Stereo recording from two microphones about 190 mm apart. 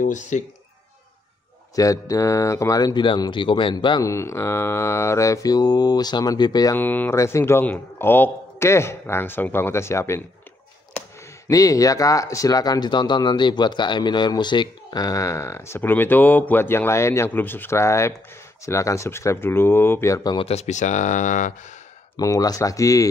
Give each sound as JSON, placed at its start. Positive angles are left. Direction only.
{"t": 0.0, "sound": "speech", "side_deg": 40}
{"t": 1.8, "sound": "speech", "side_deg": 15}
{"t": 20.3, "sound": "speech", "side_deg": 35}
{"t": 22.1, "sound": "speech", "side_deg": 20}